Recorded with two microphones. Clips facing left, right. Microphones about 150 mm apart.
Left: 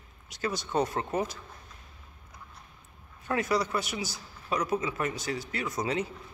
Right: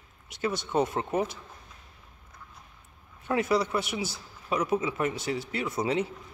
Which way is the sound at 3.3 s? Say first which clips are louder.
Right 2 dB; 25° right (ahead or behind).